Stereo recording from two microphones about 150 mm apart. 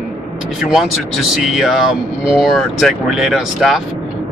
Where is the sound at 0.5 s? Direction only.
5° right (ahead or behind).